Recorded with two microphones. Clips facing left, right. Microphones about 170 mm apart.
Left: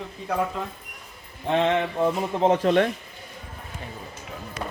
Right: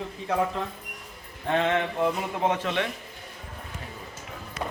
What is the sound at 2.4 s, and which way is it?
Speech, 35° left (ahead or behind).